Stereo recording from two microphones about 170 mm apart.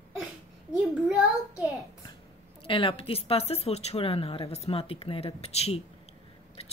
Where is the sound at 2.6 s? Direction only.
30° left (ahead or behind).